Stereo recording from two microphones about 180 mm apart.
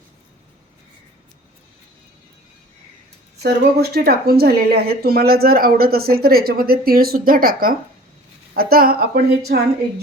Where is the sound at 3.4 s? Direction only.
60° right (ahead or behind).